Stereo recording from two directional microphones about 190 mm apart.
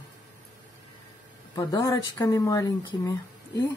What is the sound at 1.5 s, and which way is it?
Speech, 20° left (ahead or behind).